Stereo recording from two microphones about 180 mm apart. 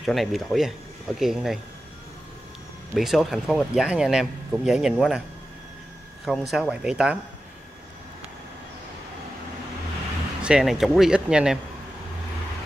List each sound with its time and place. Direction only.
0.0 s a man's voice: centre (ahead or behind)
2.9 s a man's voice: centre (ahead or behind)
6.2 s a man's voice: centre (ahead or behind)
10.4 s a man's voice: 5° right (ahead or behind)